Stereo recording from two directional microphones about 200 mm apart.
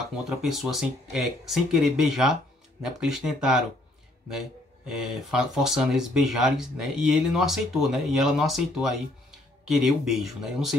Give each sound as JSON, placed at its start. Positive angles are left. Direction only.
{"t": 0.4, "sound": "speech", "side_deg": 0}